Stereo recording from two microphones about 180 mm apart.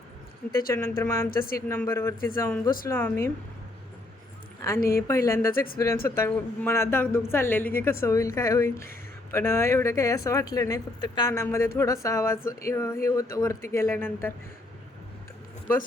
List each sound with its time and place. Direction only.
0.7 s speech: 15° left (ahead or behind)
1.3 s speech: 55° left (ahead or behind)
1.5 s speech: 15° left (ahead or behind)
4.9 s speech: 15° left (ahead or behind)
5.5 s speech: 55° left (ahead or behind)
6.1 s speech: 15° left (ahead or behind)